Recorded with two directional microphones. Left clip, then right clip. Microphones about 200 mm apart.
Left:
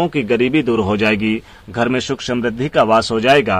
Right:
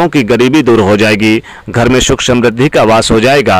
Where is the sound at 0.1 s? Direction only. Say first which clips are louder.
Right 7 dB; 35° right (ahead or behind).